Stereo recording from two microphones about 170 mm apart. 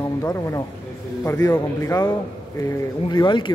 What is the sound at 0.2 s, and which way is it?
Speech, 20° left (ahead or behind).